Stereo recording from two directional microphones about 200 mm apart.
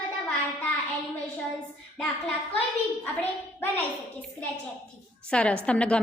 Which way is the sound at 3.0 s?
10° left (ahead or behind).